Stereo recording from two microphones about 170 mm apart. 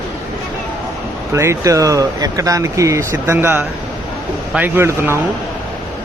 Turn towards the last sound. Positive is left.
turn(degrees=-15)  # may be behind; listen again after turning